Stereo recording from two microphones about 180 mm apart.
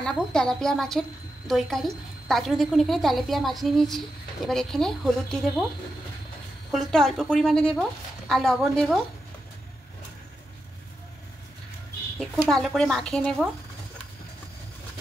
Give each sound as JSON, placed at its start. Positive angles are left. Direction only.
{"t": 0.0, "sound": "a woman's voice", "side_deg": 5}
{"t": 6.7, "sound": "a woman's voice", "side_deg": 0}
{"t": 12.2, "sound": "a woman's voice", "side_deg": 0}